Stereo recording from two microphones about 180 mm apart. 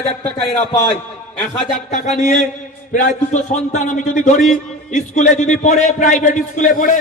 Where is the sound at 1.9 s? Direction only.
40° left (ahead or behind).